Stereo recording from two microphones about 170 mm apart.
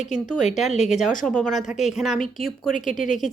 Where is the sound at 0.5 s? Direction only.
Centre (ahead or behind).